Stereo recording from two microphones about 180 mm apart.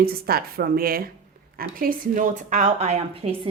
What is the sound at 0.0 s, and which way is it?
A woman's voice, 55° right (ahead or behind).